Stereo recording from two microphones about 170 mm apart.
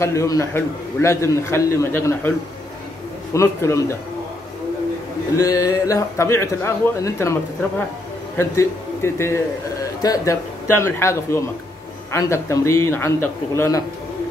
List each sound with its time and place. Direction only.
0.0 s a man's voice: 15° left (ahead or behind)
3.3 s a man's voice: 15° left (ahead or behind)
5.3 s a man's voice: 20° left (ahead or behind)
8.4 s a man's voice: 15° left (ahead or behind)